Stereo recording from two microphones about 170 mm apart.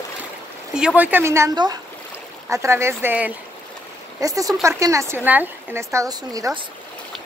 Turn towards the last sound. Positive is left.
turn(degrees=-20)  # may be behind; listen again after turning